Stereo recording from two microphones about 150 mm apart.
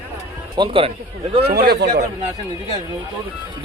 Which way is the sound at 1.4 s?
90° right.